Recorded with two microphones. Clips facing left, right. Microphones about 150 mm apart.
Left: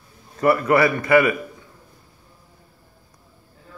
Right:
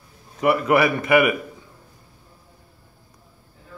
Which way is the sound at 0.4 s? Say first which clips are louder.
Left 1 dB; 15° right (ahead or behind).